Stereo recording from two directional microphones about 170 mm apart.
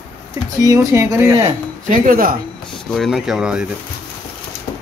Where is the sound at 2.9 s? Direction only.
Centre (ahead or behind).